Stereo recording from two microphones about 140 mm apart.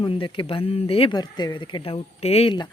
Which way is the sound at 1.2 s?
30° left (ahead or behind).